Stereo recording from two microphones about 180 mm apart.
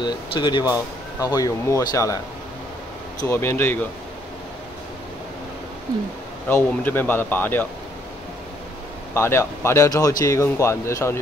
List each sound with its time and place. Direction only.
0.0 s speech: 25° left (ahead or behind)
3.2 s a man's voice: 15° left (ahead or behind)
6.5 s a man's voice: 10° left (ahead or behind)
9.1 s a man's voice: 15° left (ahead or behind)